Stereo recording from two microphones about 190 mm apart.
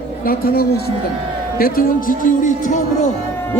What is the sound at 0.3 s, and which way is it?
Speech, 50° left (ahead or behind).